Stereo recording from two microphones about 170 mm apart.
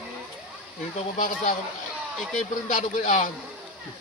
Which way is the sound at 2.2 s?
Centre (ahead or behind).